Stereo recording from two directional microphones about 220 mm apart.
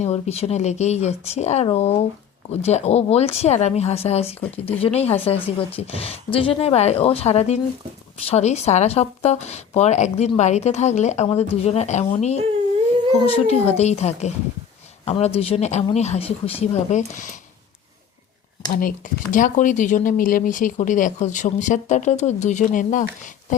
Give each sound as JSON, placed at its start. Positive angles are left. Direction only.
{"t": 0.0, "sound": "speech", "side_deg": 30}
{"t": 18.7, "sound": "speech", "side_deg": 40}